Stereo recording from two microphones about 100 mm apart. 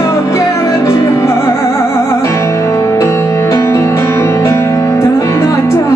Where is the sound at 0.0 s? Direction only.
35° left (ahead or behind).